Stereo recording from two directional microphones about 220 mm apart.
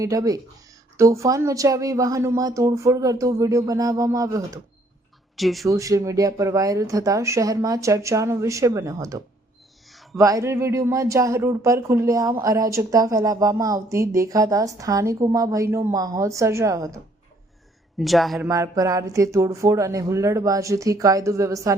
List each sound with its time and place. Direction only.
0.0 s speech: 15° right (ahead or behind)
5.4 s speech: centre (ahead or behind)
5.6 s speech: 15° right (ahead or behind)
17.9 s speech: centre (ahead or behind)
18.4 s speech: 15° right (ahead or behind)